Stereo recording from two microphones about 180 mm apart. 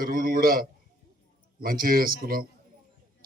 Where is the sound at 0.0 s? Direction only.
55° right (ahead or behind).